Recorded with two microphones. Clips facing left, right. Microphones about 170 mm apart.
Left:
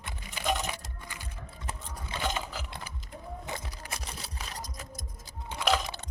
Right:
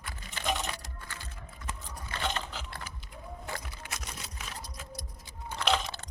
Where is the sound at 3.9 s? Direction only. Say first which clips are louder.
Left 2 dB; 35° left (ahead or behind).